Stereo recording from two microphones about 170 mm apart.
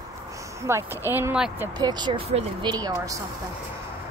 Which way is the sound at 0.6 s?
15° right (ahead or behind).